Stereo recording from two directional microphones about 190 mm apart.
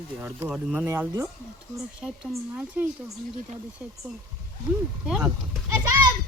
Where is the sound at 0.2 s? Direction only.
5° right (ahead or behind).